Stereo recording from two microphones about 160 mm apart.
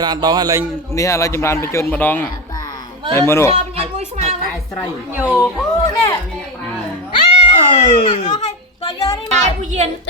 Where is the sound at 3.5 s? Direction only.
45° right (ahead or behind).